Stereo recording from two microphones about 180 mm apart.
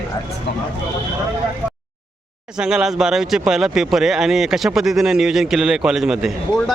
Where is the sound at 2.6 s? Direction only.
5° right (ahead or behind).